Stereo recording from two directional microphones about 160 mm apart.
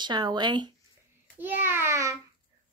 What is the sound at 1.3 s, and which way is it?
Speech, 10° right (ahead or behind).